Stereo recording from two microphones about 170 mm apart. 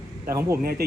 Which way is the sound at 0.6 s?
60° right (ahead or behind).